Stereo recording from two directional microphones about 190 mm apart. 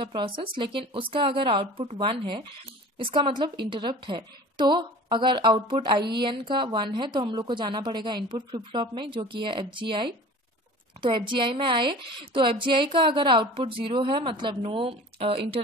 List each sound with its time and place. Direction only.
0.0 s a woman's voice: 25° right (ahead or behind)